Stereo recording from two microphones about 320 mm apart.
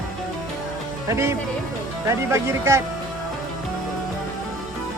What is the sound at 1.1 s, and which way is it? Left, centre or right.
Speech, centre.